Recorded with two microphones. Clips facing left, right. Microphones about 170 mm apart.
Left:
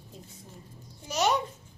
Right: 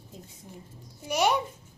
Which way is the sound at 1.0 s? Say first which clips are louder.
Right 2 dB; 10° right (ahead or behind).